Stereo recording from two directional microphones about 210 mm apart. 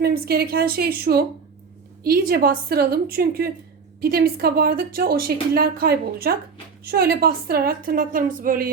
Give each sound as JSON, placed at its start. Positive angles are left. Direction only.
{"t": 0.0, "sound": "a woman's voice", "side_deg": -50}